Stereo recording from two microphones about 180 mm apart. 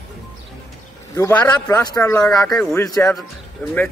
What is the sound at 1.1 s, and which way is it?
A man's voice, 15° left (ahead or behind).